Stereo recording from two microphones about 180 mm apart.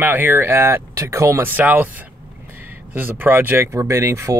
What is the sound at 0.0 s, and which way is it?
Speech, 10° right (ahead or behind).